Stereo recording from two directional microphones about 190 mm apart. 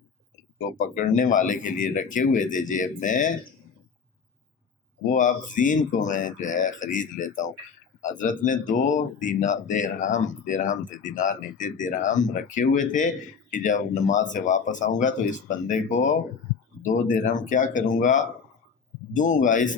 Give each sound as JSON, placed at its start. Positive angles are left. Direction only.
{"t": 0.8, "sound": "speech", "side_deg": 45}
{"t": 5.1, "sound": "speech", "side_deg": 45}